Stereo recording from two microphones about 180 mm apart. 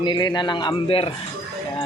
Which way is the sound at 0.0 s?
25° left (ahead or behind).